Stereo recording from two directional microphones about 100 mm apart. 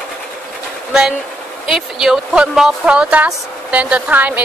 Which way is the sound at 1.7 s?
5° right (ahead or behind).